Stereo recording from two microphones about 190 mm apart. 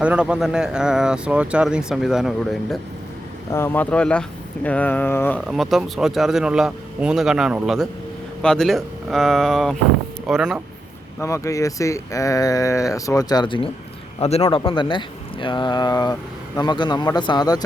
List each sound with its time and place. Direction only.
0.0 s speech: 5° right (ahead or behind)
3.5 s speech: 10° left (ahead or behind)
5.5 s speech: centre (ahead or behind)
11.2 s speech: 15° left (ahead or behind)